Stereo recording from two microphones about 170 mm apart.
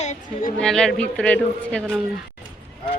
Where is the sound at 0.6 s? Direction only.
5° left (ahead or behind).